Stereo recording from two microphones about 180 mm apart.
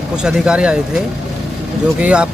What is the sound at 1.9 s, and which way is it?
Speech, 5° right (ahead or behind).